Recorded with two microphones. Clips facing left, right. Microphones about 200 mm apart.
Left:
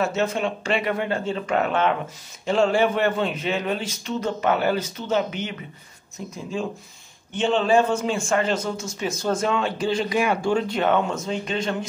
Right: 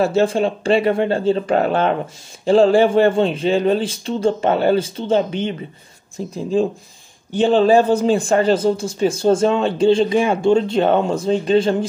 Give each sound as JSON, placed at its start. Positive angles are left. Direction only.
{"t": 0.0, "sound": "speech", "side_deg": -30}